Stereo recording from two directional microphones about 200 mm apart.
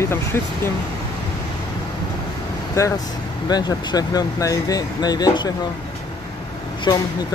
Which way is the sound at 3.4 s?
20° left (ahead or behind).